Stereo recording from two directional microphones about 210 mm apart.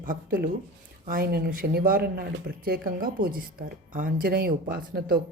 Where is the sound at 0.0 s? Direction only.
40° right (ahead or behind).